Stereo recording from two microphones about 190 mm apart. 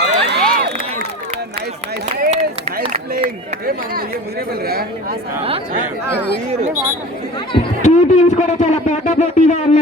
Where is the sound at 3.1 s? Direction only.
50° right (ahead or behind).